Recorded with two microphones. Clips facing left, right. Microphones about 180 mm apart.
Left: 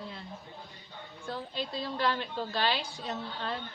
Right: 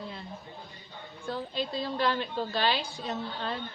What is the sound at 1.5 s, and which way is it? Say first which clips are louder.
A woman's voice: right 3 dB; 20° right (ahead or behind).